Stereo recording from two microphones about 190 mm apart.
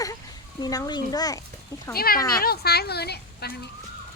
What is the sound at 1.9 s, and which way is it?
A woman's voice, 50° left (ahead or behind).